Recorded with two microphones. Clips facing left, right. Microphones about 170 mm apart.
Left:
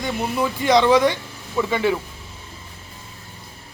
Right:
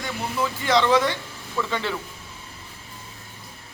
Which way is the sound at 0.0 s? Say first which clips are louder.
Left 4 dB; 20° left (ahead or behind).